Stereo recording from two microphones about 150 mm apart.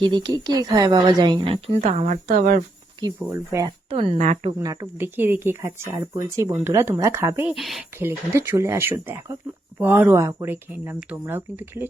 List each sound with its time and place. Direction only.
0.0 s a woman's voice: 30° right (ahead or behind)
1.8 s a woman's voice: 50° right (ahead or behind)
3.0 s a woman's voice: 20° right (ahead or behind)
3.8 s speech: 40° right (ahead or behind)
4.2 s speech: 50° right (ahead or behind)
4.6 s a woman's voice: 20° right (ahead or behind)
7.5 s speech: centre (ahead or behind)
7.9 s a woman's voice: 15° right (ahead or behind)